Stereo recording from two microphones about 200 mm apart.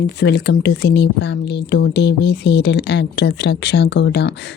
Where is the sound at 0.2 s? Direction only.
55° left (ahead or behind).